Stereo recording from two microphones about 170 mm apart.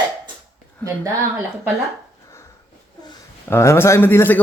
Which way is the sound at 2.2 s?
20° left (ahead or behind).